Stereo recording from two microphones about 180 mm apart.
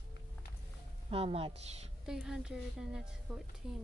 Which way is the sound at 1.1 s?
30° right (ahead or behind).